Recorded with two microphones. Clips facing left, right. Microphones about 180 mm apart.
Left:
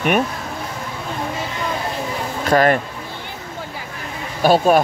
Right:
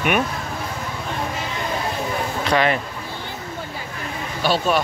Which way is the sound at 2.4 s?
45° left (ahead or behind).